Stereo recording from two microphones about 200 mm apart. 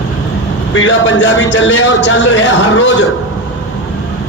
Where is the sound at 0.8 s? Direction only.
65° left (ahead or behind).